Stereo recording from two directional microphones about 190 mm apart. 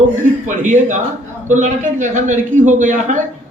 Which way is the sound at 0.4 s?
40° right (ahead or behind).